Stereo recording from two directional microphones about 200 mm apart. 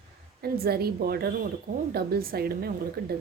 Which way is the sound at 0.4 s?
50° right (ahead or behind).